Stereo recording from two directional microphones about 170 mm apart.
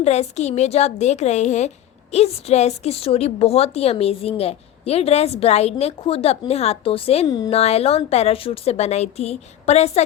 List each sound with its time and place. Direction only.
0.0 s a woman's voice: 40° left (ahead or behind)
7.3 s speech: 20° left (ahead or behind)
7.5 s a woman's voice: 40° left (ahead or behind)